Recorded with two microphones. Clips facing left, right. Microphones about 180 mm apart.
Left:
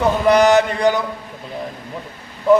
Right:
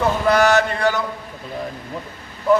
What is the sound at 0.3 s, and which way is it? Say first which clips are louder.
Speech: left 4 dB; 20° left (ahead or behind).